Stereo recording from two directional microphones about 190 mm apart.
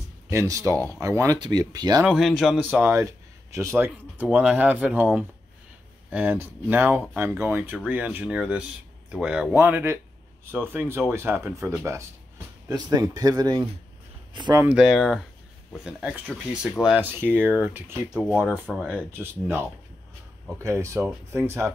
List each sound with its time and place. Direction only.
0.3 s speech: 15° right (ahead or behind)
2.0 s speech: centre (ahead or behind); by 14.6 s 25° right (ahead or behind)
14.6 s speech: 5° right (ahead or behind)